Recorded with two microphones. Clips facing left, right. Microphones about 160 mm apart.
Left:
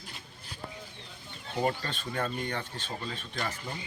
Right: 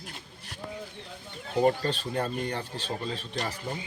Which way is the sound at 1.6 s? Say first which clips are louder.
Right 6 dB; 35° right (ahead or behind).